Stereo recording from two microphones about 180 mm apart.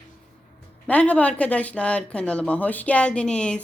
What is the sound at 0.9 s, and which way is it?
Speech, 5° left (ahead or behind).